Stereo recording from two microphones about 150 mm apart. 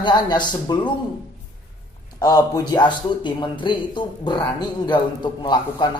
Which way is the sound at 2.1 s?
25° left (ahead or behind).